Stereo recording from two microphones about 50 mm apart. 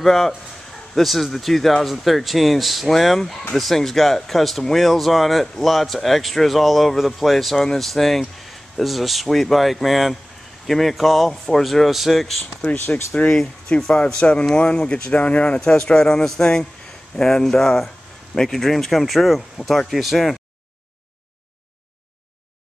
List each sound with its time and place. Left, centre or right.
0.0 s speech: centre
13.1 s speech: left
13.7 s speech: centre